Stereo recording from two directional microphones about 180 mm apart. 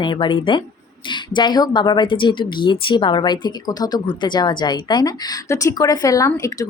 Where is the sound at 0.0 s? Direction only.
25° left (ahead or behind).